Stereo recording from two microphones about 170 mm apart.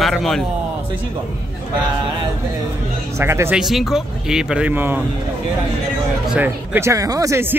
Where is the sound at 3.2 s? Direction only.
15° right (ahead or behind).